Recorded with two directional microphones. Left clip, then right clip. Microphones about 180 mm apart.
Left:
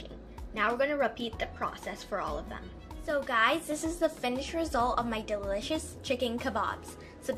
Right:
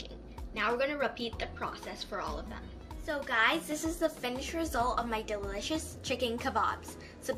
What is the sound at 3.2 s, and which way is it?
A woman's voice, 30° left (ahead or behind).